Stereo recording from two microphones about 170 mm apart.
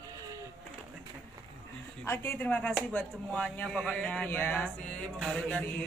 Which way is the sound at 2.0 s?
15° left (ahead or behind).